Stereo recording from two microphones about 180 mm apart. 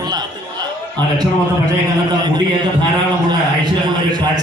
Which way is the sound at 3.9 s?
25° right (ahead or behind).